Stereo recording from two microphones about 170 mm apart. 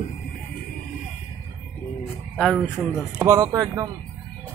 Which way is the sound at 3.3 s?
20° right (ahead or behind).